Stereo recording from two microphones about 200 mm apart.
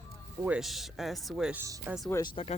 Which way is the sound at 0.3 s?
5° right (ahead or behind).